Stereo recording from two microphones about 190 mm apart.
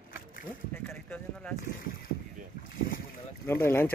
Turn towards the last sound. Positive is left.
turn(degrees=10)  # may be behind; listen again after turning